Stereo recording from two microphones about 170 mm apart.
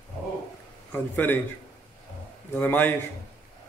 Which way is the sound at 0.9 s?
10° left (ahead or behind).